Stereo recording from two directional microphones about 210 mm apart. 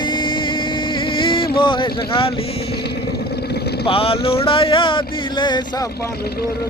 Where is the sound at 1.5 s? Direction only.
25° left (ahead or behind).